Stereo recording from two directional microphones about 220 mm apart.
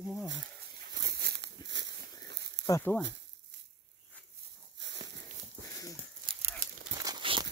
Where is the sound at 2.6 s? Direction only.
10° left (ahead or behind).